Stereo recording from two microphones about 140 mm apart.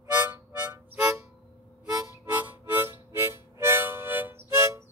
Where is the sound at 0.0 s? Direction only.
15° right (ahead or behind).